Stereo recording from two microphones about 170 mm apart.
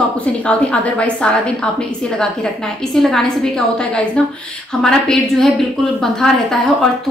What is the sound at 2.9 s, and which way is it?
Speech, centre (ahead or behind).